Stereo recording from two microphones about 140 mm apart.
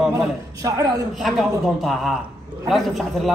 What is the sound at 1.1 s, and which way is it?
A man's voice, centre (ahead or behind).